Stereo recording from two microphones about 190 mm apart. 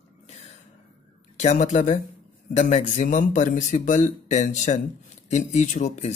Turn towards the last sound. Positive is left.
turn(degrees=40)  # may be behind; listen again after turning